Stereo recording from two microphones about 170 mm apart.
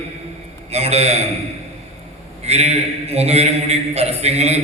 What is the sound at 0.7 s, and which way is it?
Speech, 40° right (ahead or behind).